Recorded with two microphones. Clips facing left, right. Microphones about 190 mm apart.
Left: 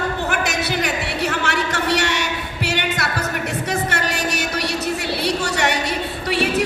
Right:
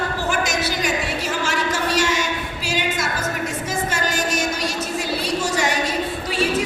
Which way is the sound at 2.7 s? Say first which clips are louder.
Even; 65° left (ahead or behind).